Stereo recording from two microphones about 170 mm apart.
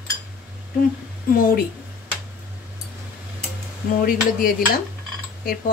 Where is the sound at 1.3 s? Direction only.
60° left (ahead or behind).